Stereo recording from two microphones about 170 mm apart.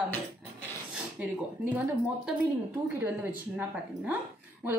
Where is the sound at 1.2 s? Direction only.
10° right (ahead or behind).